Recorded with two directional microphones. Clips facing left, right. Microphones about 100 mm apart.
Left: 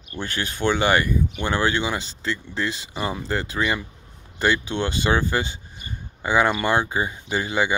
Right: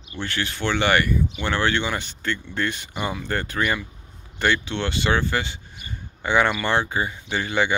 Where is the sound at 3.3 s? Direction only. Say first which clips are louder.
Even; 15° left (ahead or behind).